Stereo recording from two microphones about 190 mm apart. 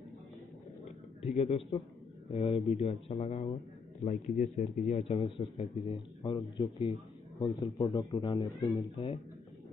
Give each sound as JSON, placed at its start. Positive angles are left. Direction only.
{"t": 1.2, "sound": "a man's voice", "side_deg": 30}